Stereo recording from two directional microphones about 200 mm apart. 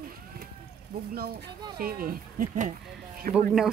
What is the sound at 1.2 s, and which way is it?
Speech, 50° right (ahead or behind).